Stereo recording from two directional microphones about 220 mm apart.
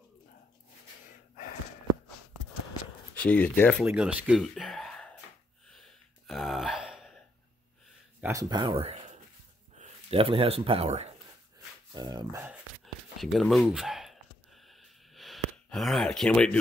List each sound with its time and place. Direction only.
3.2 s speech: 5° left (ahead or behind)
3.8 s speech: 5° right (ahead or behind)
6.2 s gasp: centre (ahead or behind)
8.2 s speech: 15° right (ahead or behind)
12.8 s a sound: centre (ahead or behind)